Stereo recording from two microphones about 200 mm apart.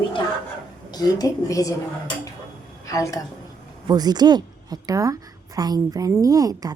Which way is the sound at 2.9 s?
15° left (ahead or behind).